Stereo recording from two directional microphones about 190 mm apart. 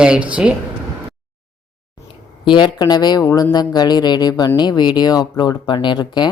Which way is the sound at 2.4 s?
25° left (ahead or behind).